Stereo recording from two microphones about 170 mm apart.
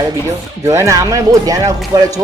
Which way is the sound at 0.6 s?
15° right (ahead or behind).